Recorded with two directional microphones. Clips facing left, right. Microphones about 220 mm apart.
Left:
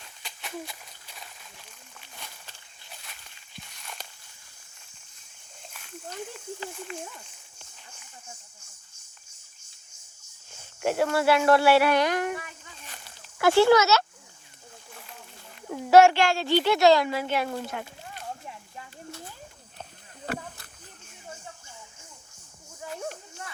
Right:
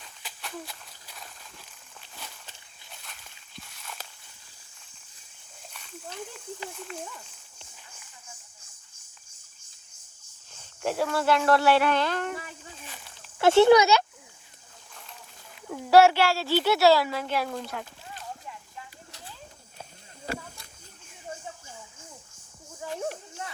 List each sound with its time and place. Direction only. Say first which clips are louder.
0.2 s a sound: even; centre (ahead or behind)
3.6 s walk: even; centre (ahead or behind)
5.7 s snake: left 2 dB; 5° left (ahead or behind)
6.7 s a child's voice: left 1 dB; centre (ahead or behind)
10.5 s speech: left 3 dB; centre (ahead or behind)
12.9 s a sound: right 1 dB; centre (ahead or behind)
13.4 s speech: right 2 dB; 20° right (ahead or behind)
15.7 s a child's voice: left 1 dB; 5° left (ahead or behind)